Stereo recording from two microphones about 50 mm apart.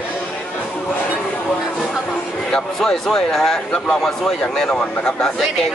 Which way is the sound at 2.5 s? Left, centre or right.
Centre.